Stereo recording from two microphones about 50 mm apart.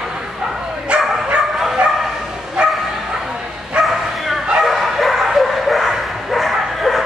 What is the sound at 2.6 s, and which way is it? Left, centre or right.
Bow-wow, centre.